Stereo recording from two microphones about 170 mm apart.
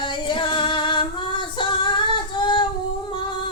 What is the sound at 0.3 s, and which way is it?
Music, 30° left (ahead or behind).